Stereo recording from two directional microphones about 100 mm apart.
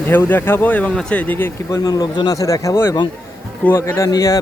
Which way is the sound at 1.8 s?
40° left (ahead or behind).